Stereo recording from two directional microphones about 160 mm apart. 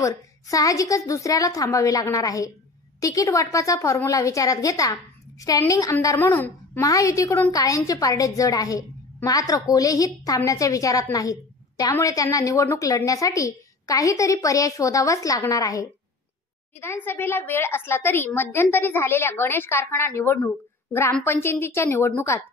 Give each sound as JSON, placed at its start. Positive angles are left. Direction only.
{"t": 0.0, "sound": "a woman's voice", "side_deg": 20}